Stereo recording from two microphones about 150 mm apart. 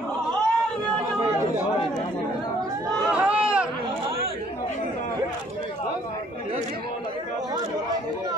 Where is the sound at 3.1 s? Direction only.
10° right (ahead or behind).